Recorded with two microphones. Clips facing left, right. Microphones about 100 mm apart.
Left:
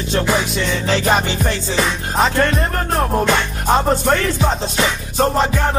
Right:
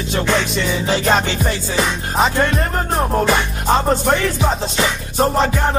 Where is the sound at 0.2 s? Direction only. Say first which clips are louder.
Right 1 dB; 10° left (ahead or behind).